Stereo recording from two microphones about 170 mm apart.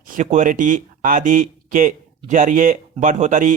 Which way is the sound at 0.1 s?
45° right (ahead or behind).